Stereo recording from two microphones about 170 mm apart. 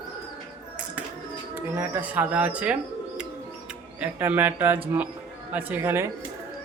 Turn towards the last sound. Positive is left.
turn(degrees=-15)  # may be behind; listen again after turning